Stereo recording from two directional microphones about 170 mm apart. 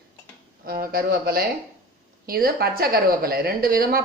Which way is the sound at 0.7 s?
60° right (ahead or behind).